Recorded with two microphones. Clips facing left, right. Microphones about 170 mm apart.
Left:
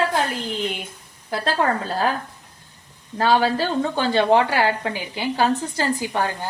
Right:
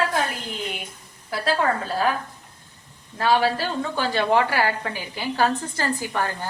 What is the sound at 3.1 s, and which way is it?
A woman's voice, 30° left (ahead or behind).